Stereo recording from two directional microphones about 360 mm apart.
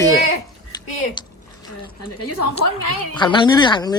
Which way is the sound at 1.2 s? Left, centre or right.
Centre.